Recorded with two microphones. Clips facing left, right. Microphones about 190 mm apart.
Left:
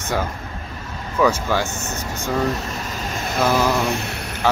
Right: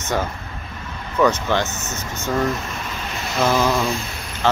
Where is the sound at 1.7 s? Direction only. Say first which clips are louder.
Left 2 dB; 30° left (ahead or behind).